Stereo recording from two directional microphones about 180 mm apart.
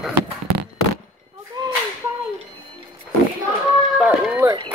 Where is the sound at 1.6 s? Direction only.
25° right (ahead or behind).